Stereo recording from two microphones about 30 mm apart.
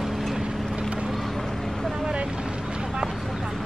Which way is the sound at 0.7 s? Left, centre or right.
Right.